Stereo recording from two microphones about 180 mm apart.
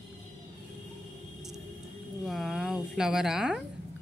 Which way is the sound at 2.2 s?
Centre (ahead or behind).